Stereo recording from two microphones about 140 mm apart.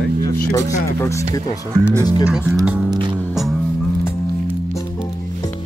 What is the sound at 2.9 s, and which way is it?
Music, 35° right (ahead or behind).